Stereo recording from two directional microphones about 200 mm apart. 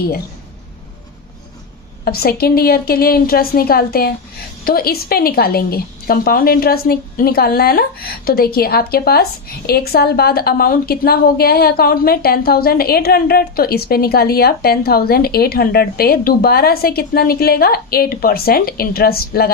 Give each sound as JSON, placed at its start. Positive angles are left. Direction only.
{"t": 2.0, "sound": "a woman's voice", "side_deg": 50}